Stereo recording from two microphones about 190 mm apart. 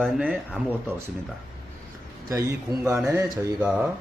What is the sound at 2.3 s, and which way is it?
Speech, 15° right (ahead or behind).